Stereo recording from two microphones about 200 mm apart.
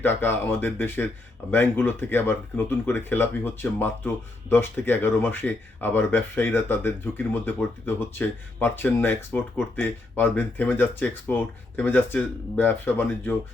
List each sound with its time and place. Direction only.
0.0 s speech: 10° left (ahead or behind)